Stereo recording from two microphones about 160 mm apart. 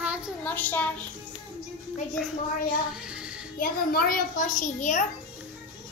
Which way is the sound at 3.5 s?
70° left (ahead or behind).